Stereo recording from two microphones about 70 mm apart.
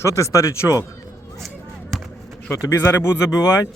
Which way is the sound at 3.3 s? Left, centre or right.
Left.